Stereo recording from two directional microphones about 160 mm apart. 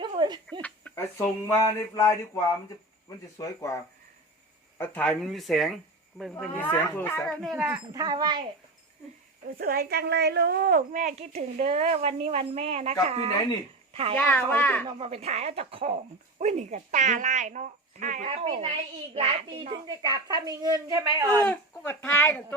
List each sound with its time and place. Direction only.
0.0 s a sound: 30° right (ahead or behind)
0.6 s a sound: 10° left (ahead or behind)
4.8 s speech: 10° left (ahead or behind)
6.4 s speech: 10° left (ahead or behind)
7.4 s speech: 5° right (ahead or behind)
7.9 s a woman's voice: 25° right (ahead or behind)
9.6 s a woman's voice: 70° right (ahead or behind); by 14.2 s 40° right (ahead or behind)
14.2 s speech: 10° left (ahead or behind)
14.8 s a woman's voice: 40° right (ahead or behind)
18.3 s a woman's voice: 35° right (ahead or behind)
21.4 s speech: 10° left (ahead or behind)